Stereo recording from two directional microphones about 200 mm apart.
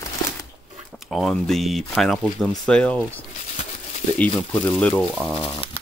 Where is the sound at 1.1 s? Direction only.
Centre (ahead or behind).